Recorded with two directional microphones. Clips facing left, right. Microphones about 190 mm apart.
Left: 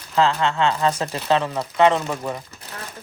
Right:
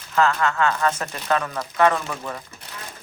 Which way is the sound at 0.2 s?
25° left (ahead or behind).